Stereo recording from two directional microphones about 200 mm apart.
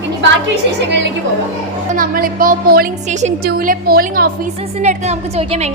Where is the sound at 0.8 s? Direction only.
65° right (ahead or behind).